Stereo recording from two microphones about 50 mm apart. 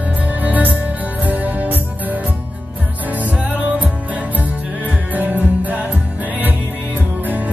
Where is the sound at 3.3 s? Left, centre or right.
Right.